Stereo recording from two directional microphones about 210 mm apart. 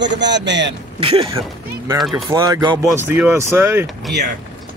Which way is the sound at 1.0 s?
25° right (ahead or behind).